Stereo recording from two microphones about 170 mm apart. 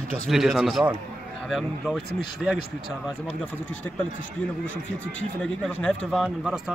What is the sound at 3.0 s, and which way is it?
Speech, 5° left (ahead or behind).